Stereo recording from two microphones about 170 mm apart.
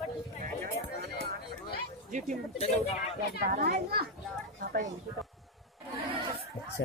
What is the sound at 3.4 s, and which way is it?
Speech, 60° right (ahead or behind).